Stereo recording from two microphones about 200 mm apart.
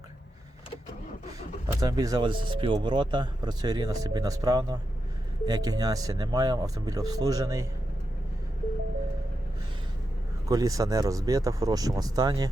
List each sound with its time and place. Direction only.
1.6 s speech: 20° right (ahead or behind)
10.5 s speech: 15° right (ahead or behind)